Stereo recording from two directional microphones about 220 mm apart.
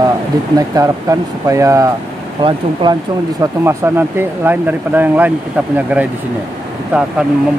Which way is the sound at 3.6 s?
10° right (ahead or behind).